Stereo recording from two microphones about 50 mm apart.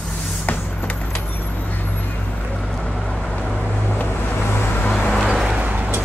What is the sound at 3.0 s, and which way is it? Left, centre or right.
Vehicle, left.